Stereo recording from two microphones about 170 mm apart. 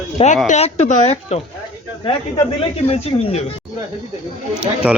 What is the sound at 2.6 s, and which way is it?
Speech, 35° left (ahead or behind).